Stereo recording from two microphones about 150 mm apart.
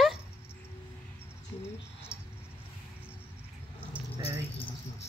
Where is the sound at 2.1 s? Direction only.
5° right (ahead or behind).